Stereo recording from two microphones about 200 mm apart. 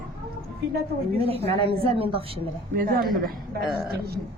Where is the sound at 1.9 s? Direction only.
30° right (ahead or behind).